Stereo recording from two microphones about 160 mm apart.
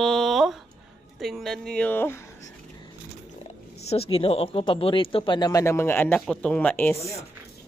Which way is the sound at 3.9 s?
35° left (ahead or behind).